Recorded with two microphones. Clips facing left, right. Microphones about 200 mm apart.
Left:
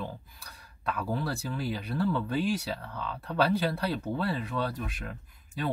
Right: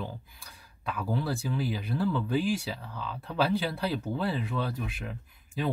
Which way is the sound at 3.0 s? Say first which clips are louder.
Left 1 dB; 55° left (ahead or behind).